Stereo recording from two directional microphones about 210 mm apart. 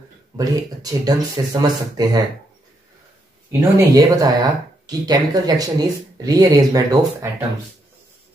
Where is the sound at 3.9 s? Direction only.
15° right (ahead or behind).